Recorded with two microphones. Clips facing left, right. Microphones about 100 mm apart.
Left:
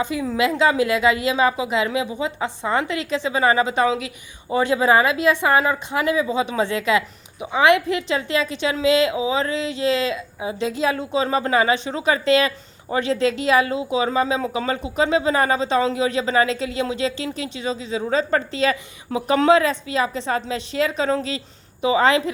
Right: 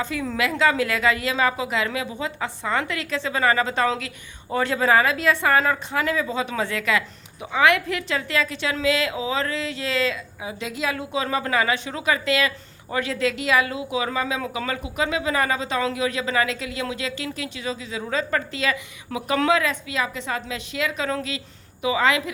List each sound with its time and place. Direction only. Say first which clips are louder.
0.0 s a woman's voice: left 4 dB; 15° left (ahead or behind); by 22.2 s 30° left (ahead or behind)